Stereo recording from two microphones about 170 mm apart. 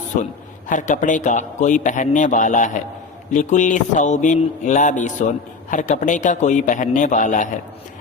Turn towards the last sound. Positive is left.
turn(degrees=50)  # may be behind; listen again after turning